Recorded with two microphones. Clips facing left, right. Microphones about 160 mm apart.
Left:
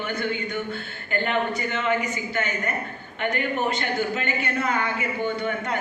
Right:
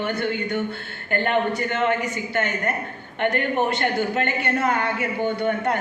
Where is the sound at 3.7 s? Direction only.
55° right (ahead or behind).